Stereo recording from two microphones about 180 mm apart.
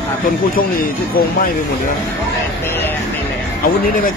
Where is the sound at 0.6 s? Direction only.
55° left (ahead or behind).